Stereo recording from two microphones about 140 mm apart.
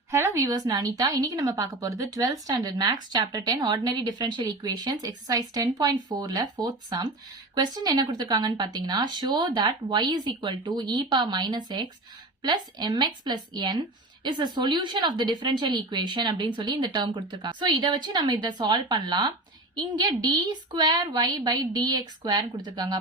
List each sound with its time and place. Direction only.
0.1 s a woman's voice: 20° right (ahead or behind)